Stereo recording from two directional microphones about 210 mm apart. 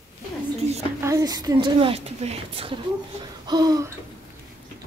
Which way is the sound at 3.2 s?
20° right (ahead or behind).